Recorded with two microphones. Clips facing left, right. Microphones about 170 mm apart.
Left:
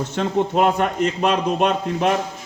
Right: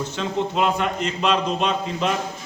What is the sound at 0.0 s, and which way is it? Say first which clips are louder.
A man's voice: left 4 dB; 55° left (ahead or behind).